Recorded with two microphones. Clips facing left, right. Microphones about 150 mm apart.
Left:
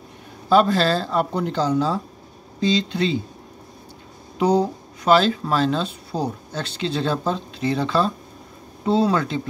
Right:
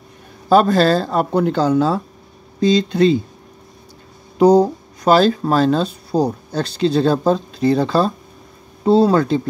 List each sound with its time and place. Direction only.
0.5 s a man's voice: 45° right (ahead or behind)
1.3 s speech: 60° right (ahead or behind)
2.6 s a man's voice: 45° right (ahead or behind)
4.4 s speech: 40° right (ahead or behind)